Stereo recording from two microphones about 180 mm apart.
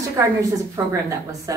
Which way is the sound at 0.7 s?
15° right (ahead or behind).